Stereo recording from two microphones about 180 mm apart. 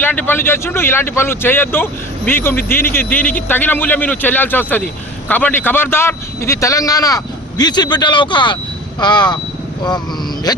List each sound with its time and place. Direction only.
0.0 s a man's voice: 10° left (ahead or behind)